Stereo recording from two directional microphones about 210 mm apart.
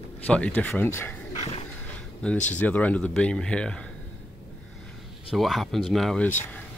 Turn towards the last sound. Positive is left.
turn(degrees=5)  # may be behind; listen again after turning